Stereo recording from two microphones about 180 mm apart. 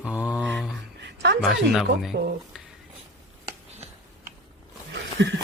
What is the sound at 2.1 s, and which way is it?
Speech, 65° right (ahead or behind).